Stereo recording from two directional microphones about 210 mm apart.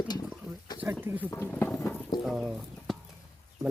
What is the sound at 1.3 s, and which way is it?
Speech, 10° left (ahead or behind).